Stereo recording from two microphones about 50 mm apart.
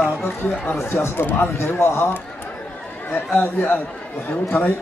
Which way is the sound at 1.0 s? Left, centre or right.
Left.